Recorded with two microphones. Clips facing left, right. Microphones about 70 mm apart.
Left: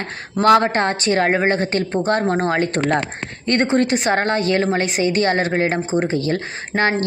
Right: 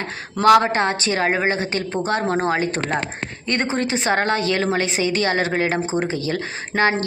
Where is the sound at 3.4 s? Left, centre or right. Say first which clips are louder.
Left 5 dB; left.